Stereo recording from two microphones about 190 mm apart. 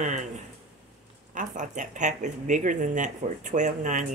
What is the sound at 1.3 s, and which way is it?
Speech, 40° right (ahead or behind).